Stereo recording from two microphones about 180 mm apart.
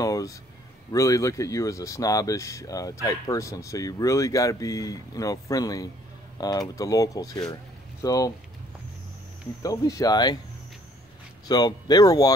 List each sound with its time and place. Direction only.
0.0 s speech: 20° left (ahead or behind)
9.6 s speech: 20° left (ahead or behind)
11.4 s speech: 20° left (ahead or behind)